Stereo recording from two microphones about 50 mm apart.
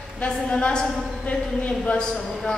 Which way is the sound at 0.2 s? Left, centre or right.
Left.